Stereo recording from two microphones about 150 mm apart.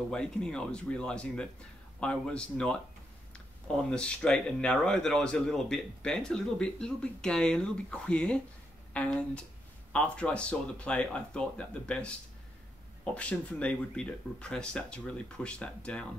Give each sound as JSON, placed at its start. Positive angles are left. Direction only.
{"t": 0.1, "sound": "speech", "side_deg": 5}